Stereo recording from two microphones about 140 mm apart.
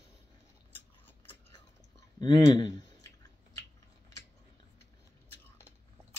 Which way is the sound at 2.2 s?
30° left (ahead or behind).